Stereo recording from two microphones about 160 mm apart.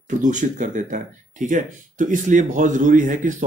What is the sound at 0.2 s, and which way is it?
Speech, 50° right (ahead or behind).